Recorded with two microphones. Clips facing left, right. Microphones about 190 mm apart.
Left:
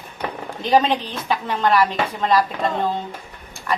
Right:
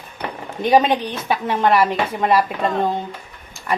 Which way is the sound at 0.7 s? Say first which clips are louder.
Right 2 dB; 20° right (ahead or behind).